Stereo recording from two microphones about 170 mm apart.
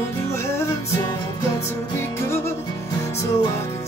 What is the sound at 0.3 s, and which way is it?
Music, 15° left (ahead or behind).